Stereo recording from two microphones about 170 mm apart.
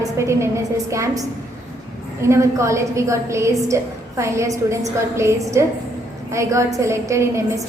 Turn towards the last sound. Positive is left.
turn(degrees=-15)  # may be behind; listen again after turning